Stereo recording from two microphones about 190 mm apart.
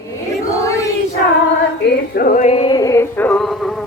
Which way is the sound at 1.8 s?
50° left (ahead or behind).